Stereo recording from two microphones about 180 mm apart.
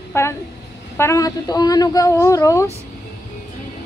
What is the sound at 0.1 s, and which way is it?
A woman's voice, 15° left (ahead or behind).